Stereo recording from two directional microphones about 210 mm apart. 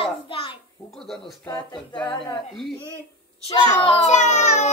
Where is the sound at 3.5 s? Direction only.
30° left (ahead or behind).